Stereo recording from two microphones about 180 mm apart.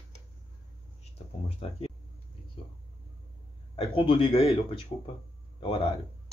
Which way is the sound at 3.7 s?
30° left (ahead or behind).